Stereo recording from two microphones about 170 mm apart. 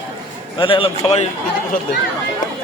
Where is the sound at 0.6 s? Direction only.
30° left (ahead or behind).